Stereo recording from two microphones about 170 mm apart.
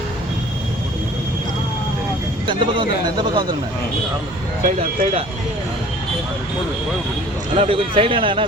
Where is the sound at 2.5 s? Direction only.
30° right (ahead or behind).